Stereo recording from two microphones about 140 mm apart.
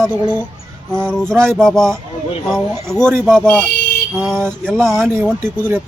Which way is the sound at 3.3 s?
5° left (ahead or behind).